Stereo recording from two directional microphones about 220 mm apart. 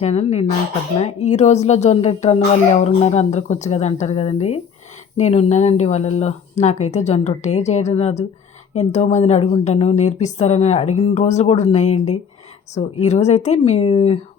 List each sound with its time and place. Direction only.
0.0 s a woman's voice: 30° left (ahead or behind)